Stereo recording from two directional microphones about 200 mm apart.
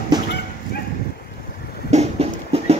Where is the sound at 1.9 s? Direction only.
30° right (ahead or behind).